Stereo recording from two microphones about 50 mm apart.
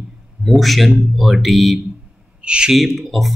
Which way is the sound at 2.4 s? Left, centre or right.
Right.